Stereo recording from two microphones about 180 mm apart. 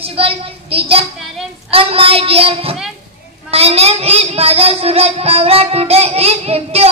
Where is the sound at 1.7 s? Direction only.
30° right (ahead or behind).